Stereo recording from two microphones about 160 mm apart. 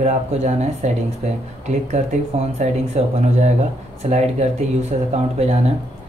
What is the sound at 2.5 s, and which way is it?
Speech, 45° right (ahead or behind).